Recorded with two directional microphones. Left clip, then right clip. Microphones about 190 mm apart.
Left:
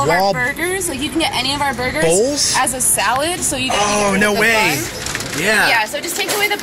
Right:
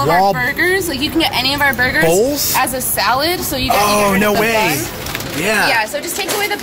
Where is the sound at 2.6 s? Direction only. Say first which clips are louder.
Right 1 dB; 35° left (ahead or behind).